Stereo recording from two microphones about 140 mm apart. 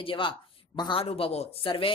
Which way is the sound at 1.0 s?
50° left (ahead or behind).